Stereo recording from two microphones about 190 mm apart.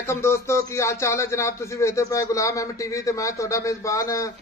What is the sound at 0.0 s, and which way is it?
Speech, 15° left (ahead or behind).